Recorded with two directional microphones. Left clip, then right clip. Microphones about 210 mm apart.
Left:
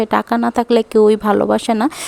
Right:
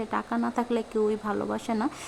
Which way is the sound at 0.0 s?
40° left (ahead or behind).